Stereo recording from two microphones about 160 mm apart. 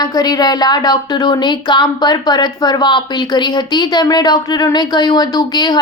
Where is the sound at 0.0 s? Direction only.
25° left (ahead or behind).